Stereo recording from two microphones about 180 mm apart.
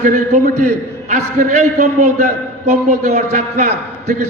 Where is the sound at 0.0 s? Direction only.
45° right (ahead or behind).